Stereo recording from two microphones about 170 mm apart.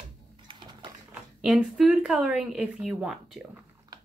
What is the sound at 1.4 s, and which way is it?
Speech, centre (ahead or behind).